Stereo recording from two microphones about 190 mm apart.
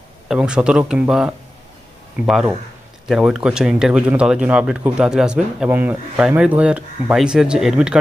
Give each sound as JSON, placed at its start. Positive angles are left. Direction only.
{"t": 0.3, "sound": "speech", "side_deg": -5}